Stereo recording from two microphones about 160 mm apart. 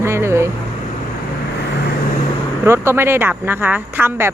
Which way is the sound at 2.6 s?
15° right (ahead or behind).